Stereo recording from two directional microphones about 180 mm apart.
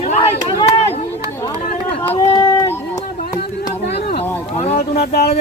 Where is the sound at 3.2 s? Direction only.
60° left (ahead or behind).